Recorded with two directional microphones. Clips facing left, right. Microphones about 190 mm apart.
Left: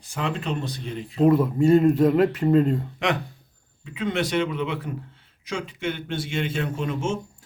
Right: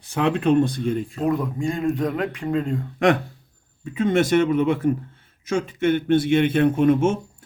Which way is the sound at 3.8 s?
45° right (ahead or behind).